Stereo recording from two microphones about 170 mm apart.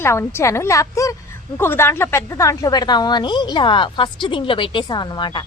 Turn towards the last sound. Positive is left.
turn(degrees=25)  # may be behind; listen again after turning